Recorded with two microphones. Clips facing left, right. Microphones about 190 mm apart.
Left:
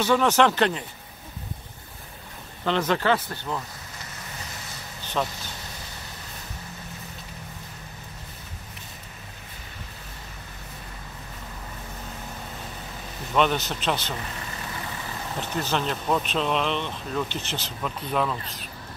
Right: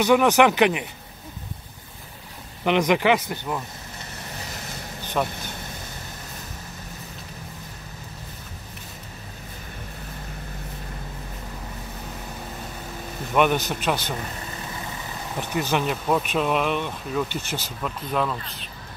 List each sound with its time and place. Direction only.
0.0 s speech: 15° right (ahead or behind)
2.6 s speech: 15° right (ahead or behind)
5.0 s vehicle: 10° right (ahead or behind)
13.3 s speech: 10° right (ahead or behind)
15.3 s speech: 10° right (ahead or behind)